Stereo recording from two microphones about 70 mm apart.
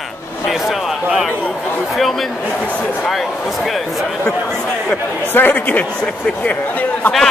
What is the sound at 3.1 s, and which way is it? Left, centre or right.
Speech, centre.